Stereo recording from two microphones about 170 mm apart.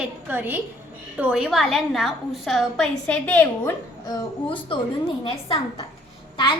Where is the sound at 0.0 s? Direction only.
10° right (ahead or behind); by 4.2 s 15° left (ahead or behind).